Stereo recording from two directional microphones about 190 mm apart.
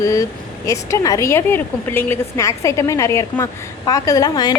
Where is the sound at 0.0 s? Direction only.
15° left (ahead or behind).